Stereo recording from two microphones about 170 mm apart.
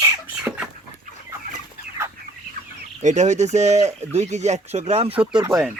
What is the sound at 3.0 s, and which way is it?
Speech, 45° right (ahead or behind).